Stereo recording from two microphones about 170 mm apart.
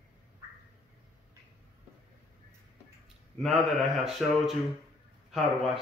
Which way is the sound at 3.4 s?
Centre (ahead or behind).